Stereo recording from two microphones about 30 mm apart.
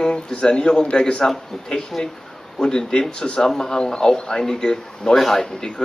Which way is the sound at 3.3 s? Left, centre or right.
Centre.